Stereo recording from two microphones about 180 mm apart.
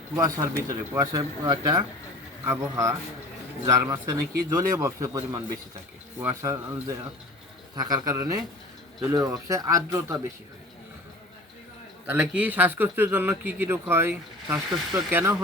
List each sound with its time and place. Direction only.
0.2 s speech: 15° right (ahead or behind)
12.0 s speech: 10° right (ahead or behind)